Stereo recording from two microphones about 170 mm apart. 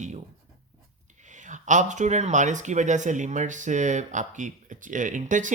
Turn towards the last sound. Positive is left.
turn(degrees=-50)  # may be behind; listen again after turning